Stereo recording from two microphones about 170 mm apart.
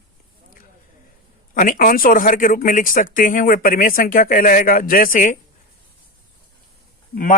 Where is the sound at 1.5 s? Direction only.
50° left (ahead or behind).